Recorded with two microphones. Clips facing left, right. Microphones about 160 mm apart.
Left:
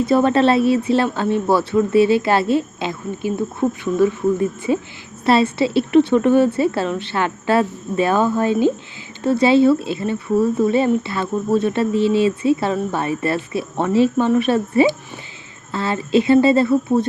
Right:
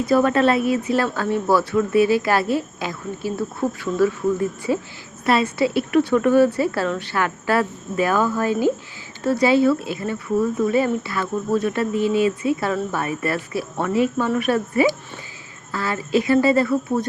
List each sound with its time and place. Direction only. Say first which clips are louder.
0.0 s speech: left 2 dB; 25° left (ahead or behind)